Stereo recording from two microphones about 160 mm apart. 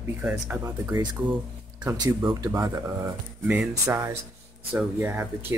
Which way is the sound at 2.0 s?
25° right (ahead or behind).